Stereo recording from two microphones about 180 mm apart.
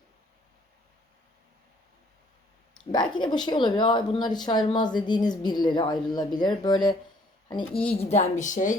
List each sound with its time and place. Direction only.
2.9 s a woman's voice: 25° left (ahead or behind)
7.9 s speech: 40° left (ahead or behind)